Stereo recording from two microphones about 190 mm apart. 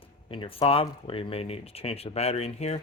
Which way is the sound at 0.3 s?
30° left (ahead or behind).